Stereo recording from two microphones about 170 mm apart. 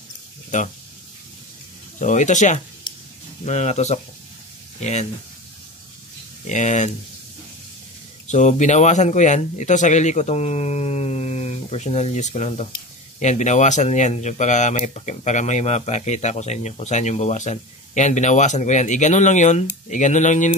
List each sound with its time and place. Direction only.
2.0 s speech: 45° left (ahead or behind)
6.4 s speech: 45° left (ahead or behind)
8.3 s speech: 45° left (ahead or behind)